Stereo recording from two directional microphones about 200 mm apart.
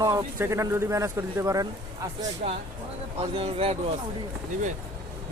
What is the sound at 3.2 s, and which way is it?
Speech, 30° right (ahead or behind).